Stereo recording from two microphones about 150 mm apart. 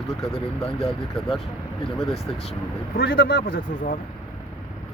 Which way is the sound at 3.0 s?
90° left.